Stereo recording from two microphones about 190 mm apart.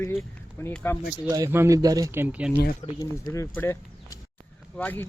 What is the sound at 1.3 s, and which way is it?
Speech, 15° right (ahead or behind).